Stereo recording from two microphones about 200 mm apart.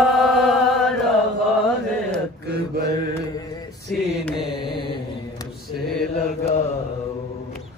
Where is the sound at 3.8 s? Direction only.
Centre (ahead or behind).